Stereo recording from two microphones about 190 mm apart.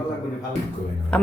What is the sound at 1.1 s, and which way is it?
Speech, 5° left (ahead or behind).